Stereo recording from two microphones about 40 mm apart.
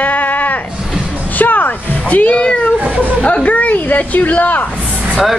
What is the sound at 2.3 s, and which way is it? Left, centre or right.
Speech, left.